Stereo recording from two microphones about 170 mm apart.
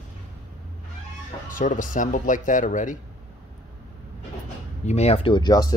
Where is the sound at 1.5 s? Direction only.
50° left (ahead or behind).